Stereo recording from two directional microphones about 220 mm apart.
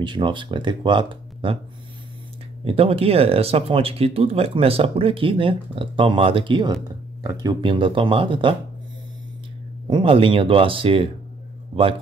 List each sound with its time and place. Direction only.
0.0 s speech: 20° right (ahead or behind)
2.6 s speech: 25° right (ahead or behind)
9.8 s speech: 20° right (ahead or behind)